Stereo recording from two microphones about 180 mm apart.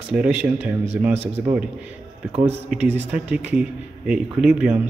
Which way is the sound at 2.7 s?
10° right (ahead or behind).